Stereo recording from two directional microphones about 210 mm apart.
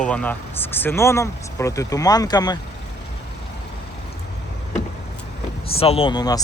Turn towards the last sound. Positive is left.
turn(degrees=20)  # may be behind; listen again after turning